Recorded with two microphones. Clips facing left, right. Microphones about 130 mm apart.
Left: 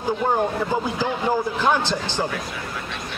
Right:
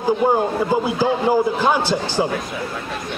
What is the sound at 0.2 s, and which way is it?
A man's voice, 10° right (ahead or behind).